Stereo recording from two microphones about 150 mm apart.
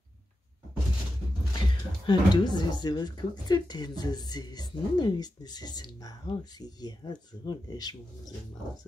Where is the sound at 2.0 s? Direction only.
30° left (ahead or behind).